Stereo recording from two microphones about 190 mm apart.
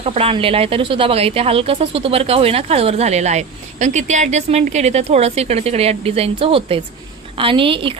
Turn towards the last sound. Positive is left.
turn(degrees=-25)  # may be behind; listen again after turning